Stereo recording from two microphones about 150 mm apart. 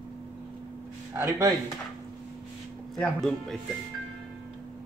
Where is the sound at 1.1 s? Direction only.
20° right (ahead or behind).